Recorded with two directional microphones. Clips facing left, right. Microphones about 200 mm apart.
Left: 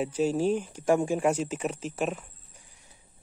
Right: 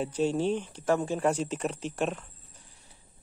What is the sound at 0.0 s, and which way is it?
Speech, 5° left (ahead or behind).